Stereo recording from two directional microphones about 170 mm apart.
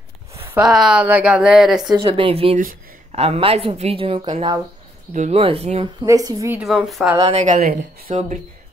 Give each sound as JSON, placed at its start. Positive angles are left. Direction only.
{"t": 0.6, "sound": "speech", "side_deg": 0}
{"t": 2.0, "sound": "speech", "side_deg": -30}
{"t": 2.5, "sound": "speech", "side_deg": -45}
{"t": 5.1, "sound": "speech", "side_deg": -40}
{"t": 6.0, "sound": "a woman's voice", "side_deg": -20}
{"t": 6.6, "sound": "speech", "side_deg": 0}
{"t": 7.2, "sound": "speech", "side_deg": -35}
{"t": 7.4, "sound": "speech", "side_deg": -50}